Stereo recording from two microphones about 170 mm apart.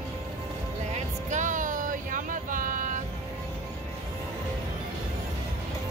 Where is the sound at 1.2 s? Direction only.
45° right (ahead or behind).